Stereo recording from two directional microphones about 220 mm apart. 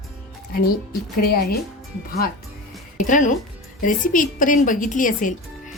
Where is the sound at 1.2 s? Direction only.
45° left (ahead or behind).